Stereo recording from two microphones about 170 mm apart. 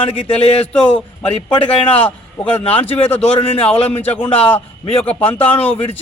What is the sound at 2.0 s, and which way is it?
Speech, 10° left (ahead or behind).